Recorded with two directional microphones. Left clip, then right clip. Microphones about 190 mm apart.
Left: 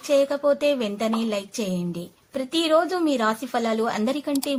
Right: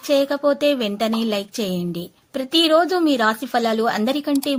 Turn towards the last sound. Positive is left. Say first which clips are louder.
# right 4 dB
turn(degrees=-25)  # may be behind; listen again after turning